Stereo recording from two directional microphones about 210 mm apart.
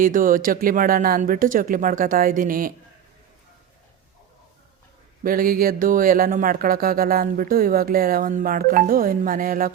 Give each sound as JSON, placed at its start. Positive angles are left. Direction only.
{"t": 0.0, "sound": "speech", "side_deg": -40}
{"t": 5.2, "sound": "speech", "side_deg": -45}